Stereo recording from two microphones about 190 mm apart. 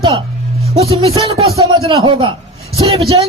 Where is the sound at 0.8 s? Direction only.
30° right (ahead or behind).